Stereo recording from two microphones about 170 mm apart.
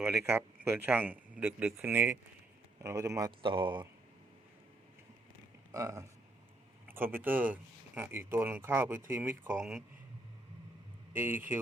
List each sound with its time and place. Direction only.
0.0 s speech: 10° right (ahead or behind); by 3.8 s 30° right (ahead or behind)
5.7 s speech: 15° right (ahead or behind)
11.1 s speech: 10° right (ahead or behind)